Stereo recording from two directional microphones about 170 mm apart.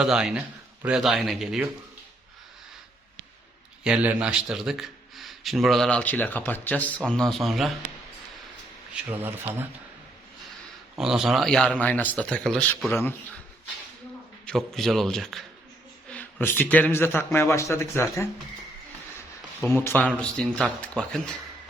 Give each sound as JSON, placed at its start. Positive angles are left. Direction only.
{"t": 0.0, "sound": "a man's voice", "side_deg": -5}
{"t": 3.8, "sound": "a man's voice", "side_deg": -5}
{"t": 9.0, "sound": "speech", "side_deg": -15}
{"t": 10.9, "sound": "a man's voice", "side_deg": -5}
{"t": 12.9, "sound": "speech", "side_deg": 15}
{"t": 14.4, "sound": "a man's voice", "side_deg": 5}
{"t": 19.6, "sound": "a man's voice", "side_deg": 15}